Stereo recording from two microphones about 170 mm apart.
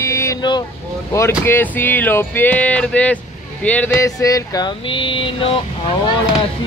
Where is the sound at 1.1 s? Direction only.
15° left (ahead or behind).